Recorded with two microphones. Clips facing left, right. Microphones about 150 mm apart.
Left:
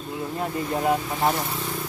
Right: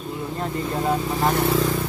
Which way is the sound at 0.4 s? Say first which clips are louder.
Even; 5° left (ahead or behind).